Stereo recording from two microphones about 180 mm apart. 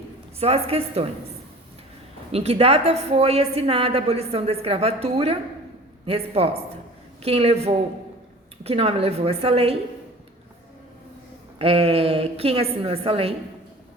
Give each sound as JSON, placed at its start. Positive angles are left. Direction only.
{"t": 0.3, "sound": "a woman's voice", "side_deg": -35}
{"t": 2.3, "sound": "a woman's voice", "side_deg": -35}
{"t": 11.6, "sound": "a woman's voice", "side_deg": -35}